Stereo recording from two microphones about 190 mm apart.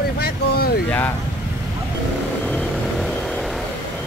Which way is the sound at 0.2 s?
55° left (ahead or behind).